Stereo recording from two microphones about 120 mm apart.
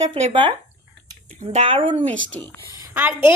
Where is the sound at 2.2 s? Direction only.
15° left (ahead or behind).